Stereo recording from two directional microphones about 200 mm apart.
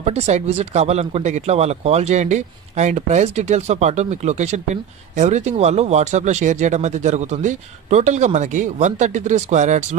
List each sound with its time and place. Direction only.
0.0 s speech: 30° right (ahead or behind)